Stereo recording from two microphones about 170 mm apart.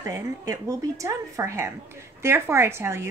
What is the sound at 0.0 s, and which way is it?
A woman's voice, 20° right (ahead or behind).